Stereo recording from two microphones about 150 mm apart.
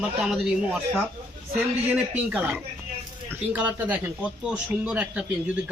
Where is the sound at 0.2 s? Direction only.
5° right (ahead or behind).